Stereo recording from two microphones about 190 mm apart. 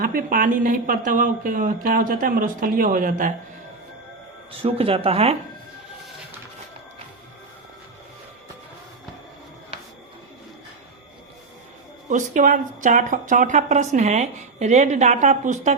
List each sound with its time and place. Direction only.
0.0 s speech: 50° right (ahead or behind)
4.6 s speech: 30° right (ahead or behind)
12.0 s speech: 40° right (ahead or behind)